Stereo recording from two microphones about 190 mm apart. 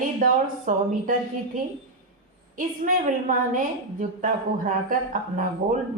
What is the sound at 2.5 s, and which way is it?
A woman's voice, 45° right (ahead or behind).